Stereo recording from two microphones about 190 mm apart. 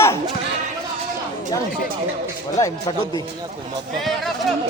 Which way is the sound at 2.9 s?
20° left (ahead or behind).